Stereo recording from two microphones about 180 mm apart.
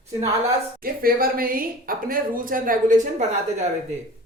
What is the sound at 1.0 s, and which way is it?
A woman's voice, 55° right (ahead or behind).